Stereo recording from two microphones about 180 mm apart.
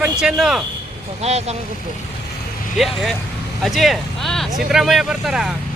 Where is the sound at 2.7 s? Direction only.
Centre (ahead or behind).